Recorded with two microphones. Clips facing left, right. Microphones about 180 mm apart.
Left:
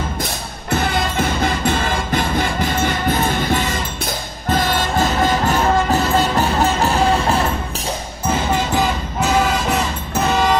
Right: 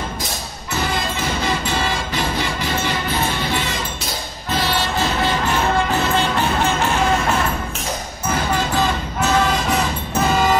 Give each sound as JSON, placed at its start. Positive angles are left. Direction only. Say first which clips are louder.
{"t": 0.7, "sound": "music", "louder": "left 4 dB", "side_deg": 55}